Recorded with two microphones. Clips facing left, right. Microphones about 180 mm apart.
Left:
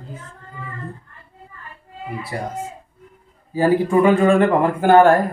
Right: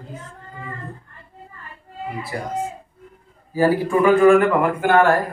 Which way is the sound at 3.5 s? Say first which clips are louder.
Left 2 dB; 20° left (ahead or behind).